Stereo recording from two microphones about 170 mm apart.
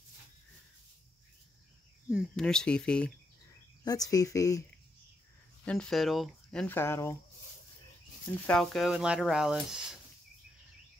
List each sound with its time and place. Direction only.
2.3 s speech: 5° left (ahead or behind)
3.8 s speech: 20° left (ahead or behind)
5.7 s speech: 5° left (ahead or behind)
8.5 s speech: centre (ahead or behind)